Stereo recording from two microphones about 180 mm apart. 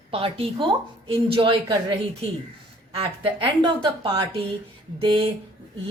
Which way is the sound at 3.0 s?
30° right (ahead or behind).